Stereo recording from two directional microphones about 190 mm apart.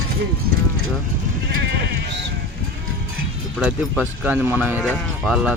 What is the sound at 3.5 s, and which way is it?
Speech, 5° right (ahead or behind).